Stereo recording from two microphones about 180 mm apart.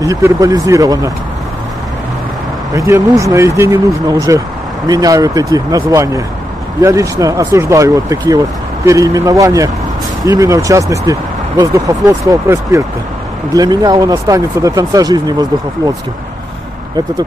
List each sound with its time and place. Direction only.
0.0 s speech: 20° right (ahead or behind)
2.7 s speech: 20° right (ahead or behind)